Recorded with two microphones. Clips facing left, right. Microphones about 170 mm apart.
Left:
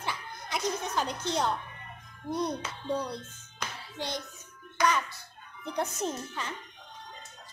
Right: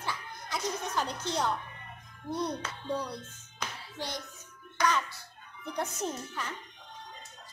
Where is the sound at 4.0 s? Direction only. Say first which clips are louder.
Left 3 dB; 20° left (ahead or behind).